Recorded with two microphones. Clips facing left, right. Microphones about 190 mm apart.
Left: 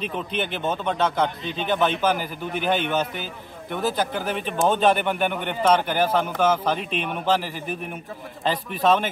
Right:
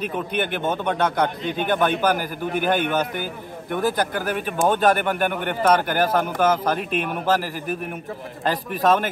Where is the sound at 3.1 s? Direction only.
50° right (ahead or behind).